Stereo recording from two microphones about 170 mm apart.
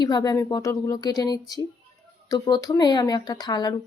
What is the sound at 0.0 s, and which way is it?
Speech, 25° left (ahead or behind).